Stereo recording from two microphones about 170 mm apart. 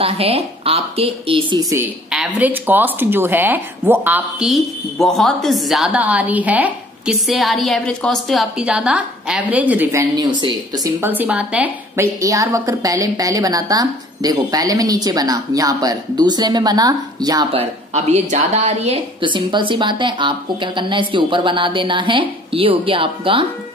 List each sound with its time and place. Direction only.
0.0 s a woman's voice: 35° right (ahead or behind)
2.0 s speech: 5° right (ahead or behind)
10.1 s a woman's voice: 25° right (ahead or behind)
11.0 s a woman's voice: 10° right (ahead or behind)
17.6 s a woman's voice: 40° right (ahead or behind)
19.2 s a woman's voice: 30° right (ahead or behind)